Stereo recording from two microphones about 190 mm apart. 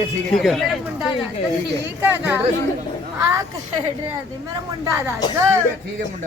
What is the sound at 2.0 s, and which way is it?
Speech, 10° right (ahead or behind).